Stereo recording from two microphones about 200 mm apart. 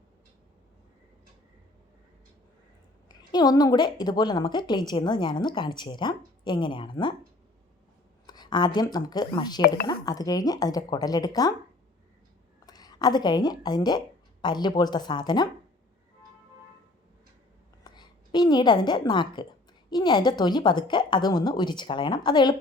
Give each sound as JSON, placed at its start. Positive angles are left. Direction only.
{"t": 3.3, "sound": "a woman's voice", "side_deg": 20}
{"t": 8.3, "sound": "a woman's voice", "side_deg": 20}
{"t": 12.6, "sound": "a woman's voice", "side_deg": 20}
{"t": 17.8, "sound": "a woman's voice", "side_deg": 20}